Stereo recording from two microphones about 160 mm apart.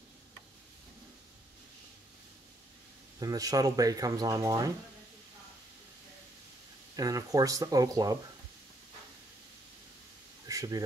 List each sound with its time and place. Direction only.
3.2 s speech: 20° right (ahead or behind)
7.0 s speech: 20° right (ahead or behind)
10.4 s a sound: 20° right (ahead or behind)